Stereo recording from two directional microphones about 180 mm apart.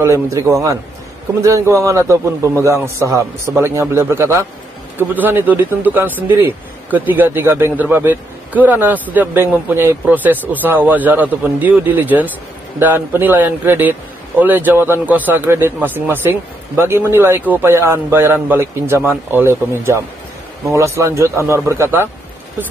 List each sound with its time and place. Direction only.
0.0 s speech: 15° right (ahead or behind)